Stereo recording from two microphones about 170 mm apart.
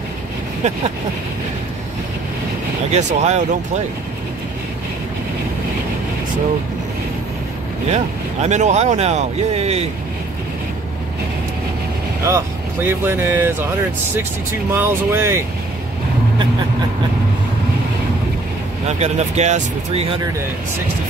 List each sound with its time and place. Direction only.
2.9 s speech: 45° right (ahead or behind)
7.9 s speech: 40° right (ahead or behind)
12.3 s speech: 15° right (ahead or behind)
14.7 s speech: 15° right (ahead or behind)
18.9 s speech: 40° right (ahead or behind)